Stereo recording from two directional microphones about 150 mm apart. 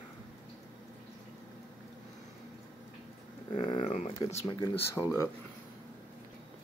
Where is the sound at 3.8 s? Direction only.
55° left (ahead or behind).